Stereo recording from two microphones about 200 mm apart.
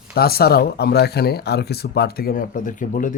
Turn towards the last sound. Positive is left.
turn(degrees=40)  # may be behind; listen again after turning